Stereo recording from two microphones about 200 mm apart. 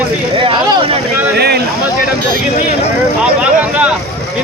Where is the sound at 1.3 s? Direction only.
55° right (ahead or behind).